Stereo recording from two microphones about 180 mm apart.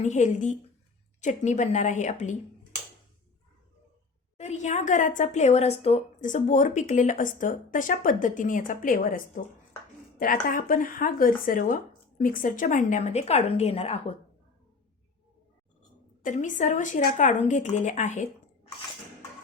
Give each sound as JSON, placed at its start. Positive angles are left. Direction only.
{"t": 0.0, "sound": "a woman's voice", "side_deg": 40}
{"t": 4.4, "sound": "a woman's voice", "side_deg": 40}
{"t": 16.2, "sound": "a woman's voice", "side_deg": 45}